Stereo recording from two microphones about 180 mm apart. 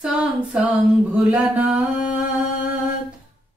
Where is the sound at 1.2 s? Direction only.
5° right (ahead or behind).